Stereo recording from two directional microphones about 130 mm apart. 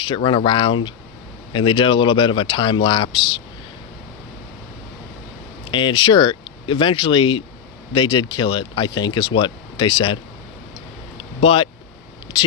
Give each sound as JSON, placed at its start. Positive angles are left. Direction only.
{"t": 0.0, "sound": "speech", "side_deg": 40}
{"t": 5.6, "sound": "speech", "side_deg": 40}
{"t": 11.2, "sound": "a sound", "side_deg": 45}